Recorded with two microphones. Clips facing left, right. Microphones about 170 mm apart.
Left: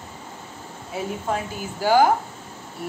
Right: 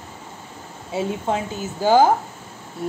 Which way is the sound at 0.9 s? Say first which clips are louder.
Right 5 dB; 25° right (ahead or behind).